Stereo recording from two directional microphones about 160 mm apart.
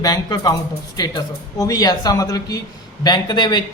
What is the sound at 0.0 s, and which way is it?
A man's voice, 25° left (ahead or behind).